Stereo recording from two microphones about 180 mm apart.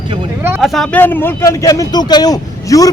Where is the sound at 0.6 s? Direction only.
Centre (ahead or behind).